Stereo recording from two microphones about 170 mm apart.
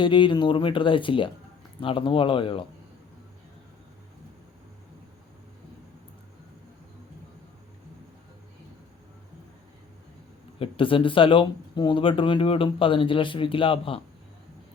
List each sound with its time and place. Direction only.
0.0 s speech: 30° left (ahead or behind)
10.6 s speech: 30° left (ahead or behind)